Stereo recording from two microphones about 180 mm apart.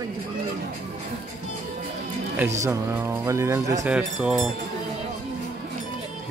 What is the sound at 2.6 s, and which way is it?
Speech, 15° right (ahead or behind).